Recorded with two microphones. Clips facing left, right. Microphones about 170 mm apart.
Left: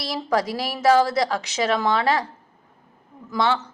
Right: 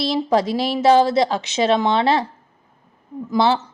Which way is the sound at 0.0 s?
25° right (ahead or behind).